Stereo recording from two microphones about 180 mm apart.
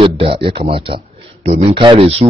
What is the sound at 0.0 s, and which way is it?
A man's voice, 30° right (ahead or behind).